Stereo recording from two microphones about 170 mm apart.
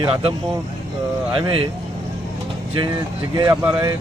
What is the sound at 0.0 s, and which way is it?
Speech, 35° right (ahead or behind).